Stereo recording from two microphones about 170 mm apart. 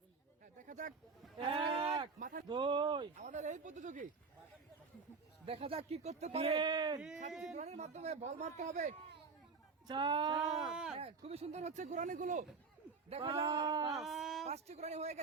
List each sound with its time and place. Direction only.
0.7 s a sound: 45° right (ahead or behind)
1.4 s speech: 30° right (ahead or behind)
2.1 s speech: 50° right (ahead or behind)
2.5 s speech: 25° right (ahead or behind)
3.2 s speech: 45° right (ahead or behind)
5.5 s speech: 35° right (ahead or behind)
7.5 s speech: 40° right (ahead or behind)
9.8 s speech: 25° right (ahead or behind)
10.3 s speech: 5° right (ahead or behind)
10.9 s speech: 35° right (ahead or behind)
13.1 s speech: 35° right (ahead or behind)
13.5 s speech: 25° right (ahead or behind)
13.9 s speech: centre (ahead or behind)
14.4 s speech: 40° right (ahead or behind)